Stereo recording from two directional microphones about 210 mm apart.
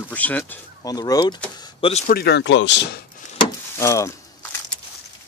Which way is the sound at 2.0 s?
50° left (ahead or behind).